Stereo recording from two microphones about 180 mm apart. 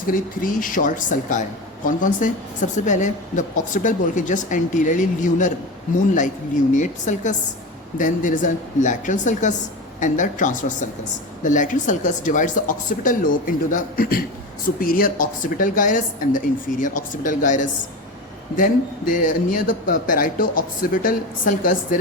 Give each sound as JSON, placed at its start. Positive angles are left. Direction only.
{"t": 0.1, "sound": "a woman's voice", "side_deg": 50}
{"t": 6.7, "sound": "a woman's voice", "side_deg": 45}